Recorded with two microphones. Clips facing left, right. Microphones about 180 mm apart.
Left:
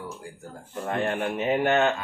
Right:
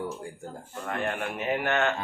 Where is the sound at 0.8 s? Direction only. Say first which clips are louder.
Left 4 dB; 25° left (ahead or behind).